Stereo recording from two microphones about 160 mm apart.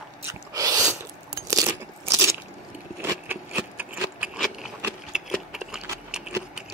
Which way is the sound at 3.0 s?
10° right (ahead or behind).